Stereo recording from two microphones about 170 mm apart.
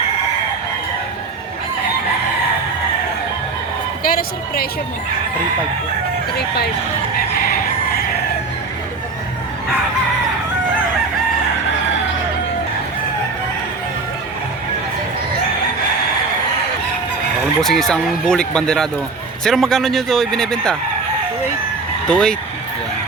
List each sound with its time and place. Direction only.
4.0 s a woman's voice: 60° left (ahead or behind)
17.6 s a man's voice: centre (ahead or behind)
22.0 s speech: 5° left (ahead or behind)